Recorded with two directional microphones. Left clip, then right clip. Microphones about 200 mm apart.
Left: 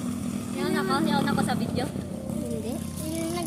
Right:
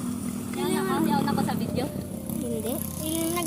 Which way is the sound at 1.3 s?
20° left (ahead or behind).